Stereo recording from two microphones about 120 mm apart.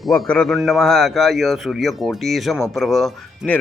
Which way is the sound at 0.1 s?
5° left (ahead or behind).